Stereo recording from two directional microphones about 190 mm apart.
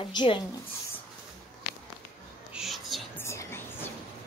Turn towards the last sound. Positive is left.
turn(degrees=10)  # may be behind; listen again after turning